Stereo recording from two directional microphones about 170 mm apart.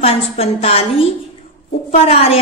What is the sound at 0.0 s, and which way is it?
A woman's voice, 35° left (ahead or behind).